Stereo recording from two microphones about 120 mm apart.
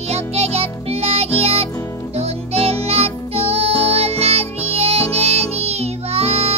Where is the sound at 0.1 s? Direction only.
60° right (ahead or behind).